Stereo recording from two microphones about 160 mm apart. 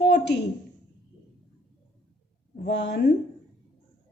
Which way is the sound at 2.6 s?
90° left.